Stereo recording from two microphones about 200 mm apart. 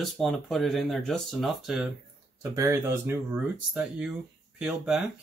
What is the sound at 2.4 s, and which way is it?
Speech, 15° right (ahead or behind).